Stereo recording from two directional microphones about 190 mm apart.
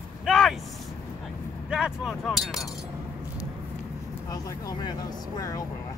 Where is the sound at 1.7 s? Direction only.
5° right (ahead or behind).